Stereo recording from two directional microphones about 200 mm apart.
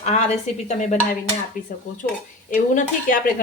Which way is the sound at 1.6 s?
45° left (ahead or behind).